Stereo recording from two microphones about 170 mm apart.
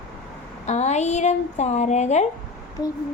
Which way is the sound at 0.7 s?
40° left (ahead or behind).